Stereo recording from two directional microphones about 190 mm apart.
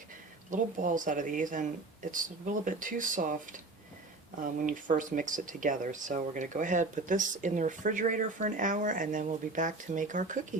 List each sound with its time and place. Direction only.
0.5 s speech: 45° right (ahead or behind)
4.6 s speech: 45° right (ahead or behind)